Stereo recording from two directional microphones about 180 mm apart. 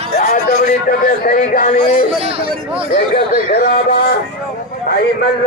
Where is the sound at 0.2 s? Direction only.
45° left (ahead or behind).